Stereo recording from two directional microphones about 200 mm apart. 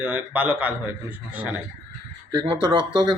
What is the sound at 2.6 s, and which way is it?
Speech, 25° right (ahead or behind).